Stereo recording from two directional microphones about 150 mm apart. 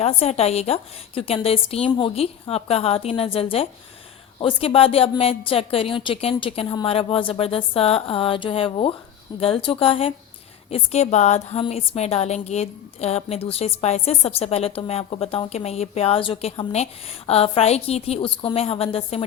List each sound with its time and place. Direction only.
0.0 s a woman's voice: 45° left (ahead or behind)